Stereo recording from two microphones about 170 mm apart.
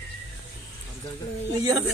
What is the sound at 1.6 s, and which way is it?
Speech, 20° right (ahead or behind).